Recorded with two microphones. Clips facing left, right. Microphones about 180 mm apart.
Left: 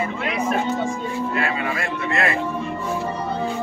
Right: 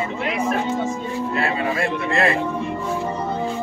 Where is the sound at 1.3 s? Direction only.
30° right (ahead or behind).